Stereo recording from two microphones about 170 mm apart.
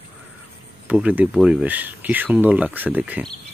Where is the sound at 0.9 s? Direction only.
5° right (ahead or behind).